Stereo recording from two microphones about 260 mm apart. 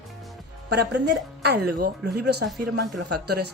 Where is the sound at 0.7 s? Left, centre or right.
Right.